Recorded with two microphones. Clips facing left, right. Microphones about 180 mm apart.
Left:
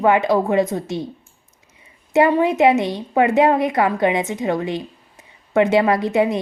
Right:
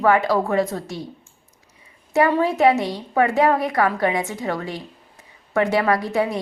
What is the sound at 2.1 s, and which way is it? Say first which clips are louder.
A woman's voice: left 3 dB; 20° left (ahead or behind).